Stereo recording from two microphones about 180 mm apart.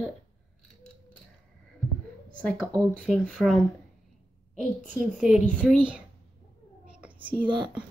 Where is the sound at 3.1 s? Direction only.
Centre (ahead or behind).